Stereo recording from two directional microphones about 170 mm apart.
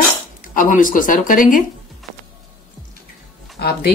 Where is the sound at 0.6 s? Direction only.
50° left (ahead or behind).